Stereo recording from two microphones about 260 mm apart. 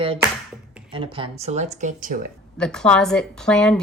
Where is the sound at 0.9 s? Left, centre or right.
Centre.